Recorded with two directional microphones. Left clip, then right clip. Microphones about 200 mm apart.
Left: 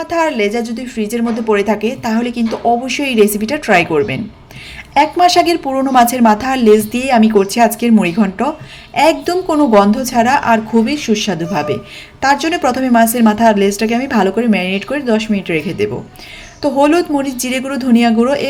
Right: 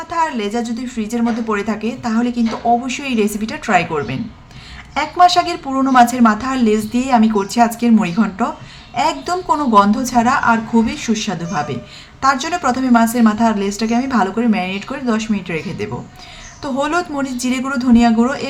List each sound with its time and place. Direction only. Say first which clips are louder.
0.0 s a woman's voice: left 4 dB; 15° left (ahead or behind)